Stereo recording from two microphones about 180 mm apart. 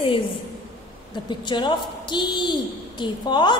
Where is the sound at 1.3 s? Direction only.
25° left (ahead or behind).